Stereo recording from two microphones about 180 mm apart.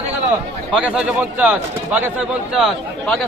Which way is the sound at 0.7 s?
5° right (ahead or behind).